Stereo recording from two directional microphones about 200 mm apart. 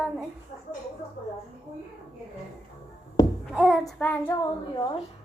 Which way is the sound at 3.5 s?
5° right (ahead or behind).